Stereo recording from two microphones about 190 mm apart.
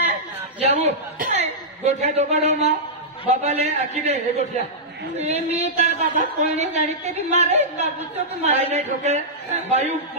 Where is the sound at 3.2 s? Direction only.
35° right (ahead or behind).